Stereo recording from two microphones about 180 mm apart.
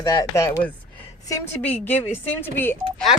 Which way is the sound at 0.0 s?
20° left (ahead or behind).